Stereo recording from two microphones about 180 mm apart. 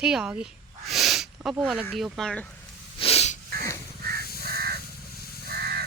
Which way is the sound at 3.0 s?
35° left (ahead or behind).